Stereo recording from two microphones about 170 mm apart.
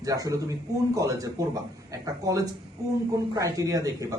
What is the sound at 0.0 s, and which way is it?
Speech, 20° right (ahead or behind).